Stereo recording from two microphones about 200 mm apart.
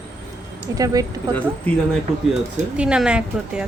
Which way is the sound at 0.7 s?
15° right (ahead or behind).